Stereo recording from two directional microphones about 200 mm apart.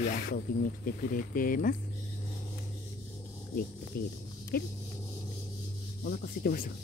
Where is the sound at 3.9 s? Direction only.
50° left (ahead or behind).